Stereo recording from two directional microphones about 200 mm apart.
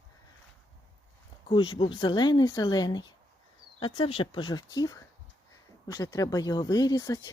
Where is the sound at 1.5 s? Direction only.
25° left (ahead or behind).